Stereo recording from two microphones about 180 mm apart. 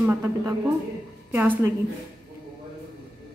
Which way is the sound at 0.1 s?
15° right (ahead or behind).